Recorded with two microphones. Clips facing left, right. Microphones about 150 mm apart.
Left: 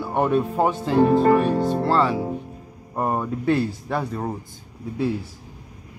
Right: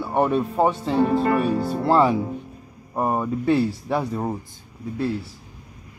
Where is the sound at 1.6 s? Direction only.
15° right (ahead or behind).